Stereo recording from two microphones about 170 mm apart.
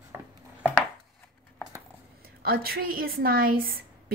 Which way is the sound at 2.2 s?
60° right (ahead or behind).